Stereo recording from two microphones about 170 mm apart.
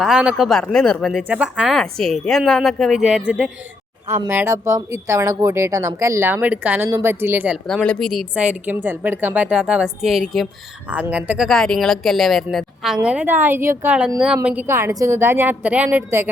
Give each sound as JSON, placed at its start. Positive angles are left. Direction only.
{"t": 0.0, "sound": "speech", "side_deg": -5}